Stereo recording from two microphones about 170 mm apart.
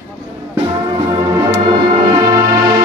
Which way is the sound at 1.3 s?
20° right (ahead or behind).